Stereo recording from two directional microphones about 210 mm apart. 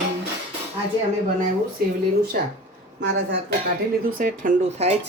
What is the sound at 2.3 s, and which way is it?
Speech, 45° right (ahead or behind).